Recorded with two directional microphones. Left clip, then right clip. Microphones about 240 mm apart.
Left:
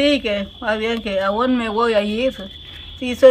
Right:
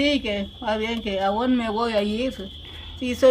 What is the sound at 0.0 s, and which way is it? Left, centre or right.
A woman's voice, centre.